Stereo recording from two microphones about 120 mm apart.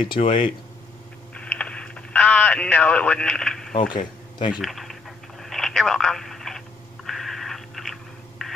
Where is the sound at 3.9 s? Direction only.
40° left (ahead or behind).